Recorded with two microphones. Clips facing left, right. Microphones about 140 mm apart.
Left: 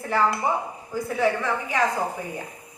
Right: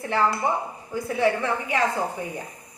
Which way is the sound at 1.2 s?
30° right (ahead or behind).